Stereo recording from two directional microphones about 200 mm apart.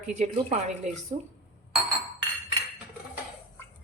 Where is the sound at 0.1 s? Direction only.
35° right (ahead or behind).